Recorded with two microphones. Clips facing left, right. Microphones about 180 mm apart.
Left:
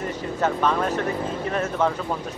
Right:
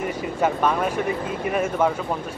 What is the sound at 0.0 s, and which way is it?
Speech, 10° right (ahead or behind).